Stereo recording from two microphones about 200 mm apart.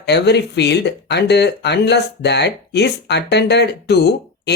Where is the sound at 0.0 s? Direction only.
55° left (ahead or behind).